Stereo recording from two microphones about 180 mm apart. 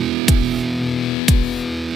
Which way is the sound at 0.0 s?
Centre (ahead or behind).